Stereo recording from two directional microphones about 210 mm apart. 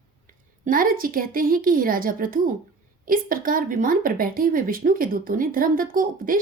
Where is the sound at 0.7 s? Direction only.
40° right (ahead or behind).